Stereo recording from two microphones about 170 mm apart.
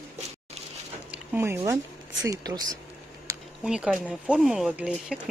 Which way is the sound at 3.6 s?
5° right (ahead or behind).